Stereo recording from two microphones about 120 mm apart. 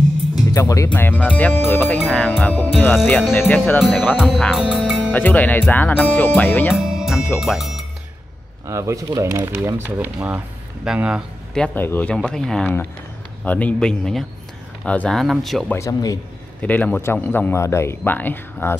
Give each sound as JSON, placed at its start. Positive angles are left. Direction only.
{"t": 0.5, "sound": "speech", "side_deg": 30}
{"t": 0.9, "sound": "speech", "side_deg": 15}
{"t": 4.5, "sound": "speech", "side_deg": -5}
{"t": 5.1, "sound": "speech", "side_deg": 15}
{"t": 6.7, "sound": "music", "side_deg": -5}
{"t": 7.3, "sound": "speech", "side_deg": 0}
{"t": 8.6, "sound": "speech", "side_deg": -25}
{"t": 11.5, "sound": "a man's voice", "side_deg": 5}
{"t": 15.7, "sound": "speech", "side_deg": 30}
{"t": 16.6, "sound": "speech", "side_deg": 15}